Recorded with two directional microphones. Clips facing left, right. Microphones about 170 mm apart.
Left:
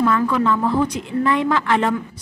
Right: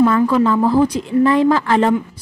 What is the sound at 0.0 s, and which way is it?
A woman's voice, 35° right (ahead or behind).